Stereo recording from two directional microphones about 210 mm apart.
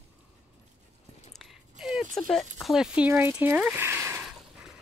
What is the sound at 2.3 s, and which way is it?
Speech, centre (ahead or behind).